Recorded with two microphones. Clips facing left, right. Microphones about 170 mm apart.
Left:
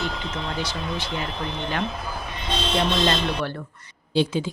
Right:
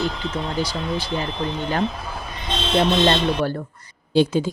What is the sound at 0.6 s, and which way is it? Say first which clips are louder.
Speech: right 4 dB; 10° right (ahead or behind).